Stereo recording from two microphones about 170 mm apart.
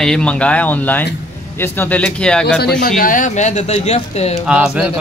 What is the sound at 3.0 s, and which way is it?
Speech, 50° left (ahead or behind).